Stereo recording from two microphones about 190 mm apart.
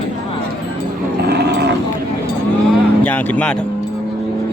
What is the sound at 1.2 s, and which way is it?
Cattle, 60° right (ahead or behind).